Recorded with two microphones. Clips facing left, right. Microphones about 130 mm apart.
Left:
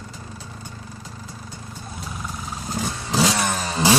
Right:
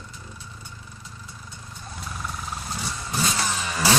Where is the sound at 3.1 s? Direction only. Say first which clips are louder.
Left 7 dB; 90° left.